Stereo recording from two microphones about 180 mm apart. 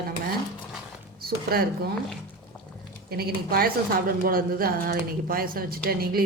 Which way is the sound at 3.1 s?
60° right (ahead or behind).